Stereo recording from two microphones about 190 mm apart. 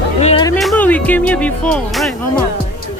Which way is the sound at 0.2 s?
35° left (ahead or behind).